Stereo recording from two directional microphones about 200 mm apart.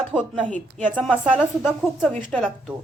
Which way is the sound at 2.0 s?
5° left (ahead or behind).